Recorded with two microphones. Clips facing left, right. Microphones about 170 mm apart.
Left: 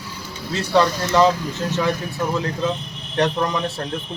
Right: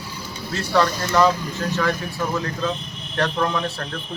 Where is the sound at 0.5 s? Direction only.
20° left (ahead or behind).